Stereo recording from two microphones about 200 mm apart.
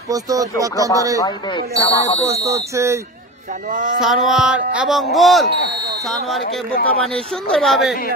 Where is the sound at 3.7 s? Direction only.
40° right (ahead or behind).